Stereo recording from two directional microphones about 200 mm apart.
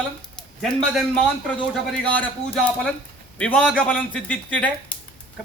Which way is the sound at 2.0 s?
5° left (ahead or behind).